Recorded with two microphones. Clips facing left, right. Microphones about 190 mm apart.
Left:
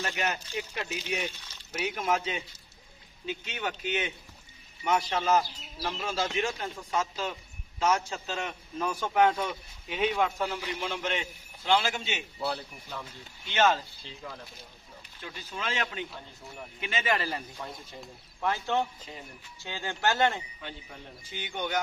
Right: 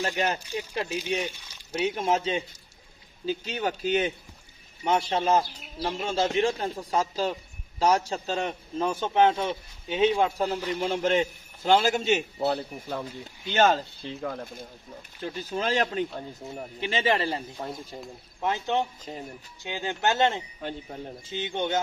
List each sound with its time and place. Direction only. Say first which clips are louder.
0.0 s a man's voice: right 5 dB; 35° right (ahead or behind)
1.4 s speech: even; 10° right (ahead or behind)
1.7 s a man's voice: right 4 dB; 25° right (ahead or behind)
14.0 s speech: right 10 dB; 60° right (ahead or behind)
15.2 s a man's voice: right 8 dB; 40° right (ahead or behind)
17.9 s a man's voice: right 5 dB; 40° right (ahead or behind)
18.3 s speech: right 2 dB; 20° right (ahead or behind)
19.1 s speech: right 7 dB; 45° right (ahead or behind)
19.6 s speech: right 3 dB; 20° right (ahead or behind)
20.6 s a man's voice: right 8 dB; 40° right (ahead or behind)
21.2 s speech: right 5 dB; 25° right (ahead or behind)